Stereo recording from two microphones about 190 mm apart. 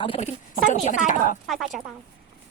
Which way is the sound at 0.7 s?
40° left (ahead or behind).